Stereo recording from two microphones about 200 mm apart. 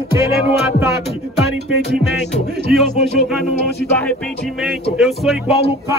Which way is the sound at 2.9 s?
35° left (ahead or behind).